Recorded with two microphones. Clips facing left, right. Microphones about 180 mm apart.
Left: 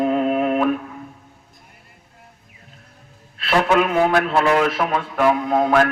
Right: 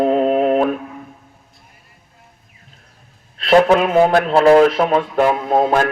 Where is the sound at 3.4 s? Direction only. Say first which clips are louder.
Right 5 dB; 35° right (ahead or behind).